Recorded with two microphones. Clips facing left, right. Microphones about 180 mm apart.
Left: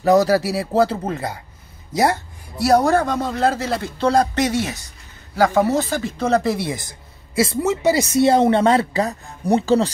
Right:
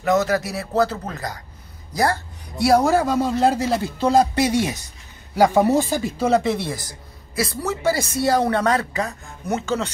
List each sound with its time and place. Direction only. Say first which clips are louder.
0.0 s speech: left 5 dB; 35° left (ahead or behind)
2.5 s speech: left 1 dB; centre (ahead or behind)
6.5 s a woman's voice: left 1 dB; 15° left (ahead or behind); by 9.8 s 35° left (ahead or behind)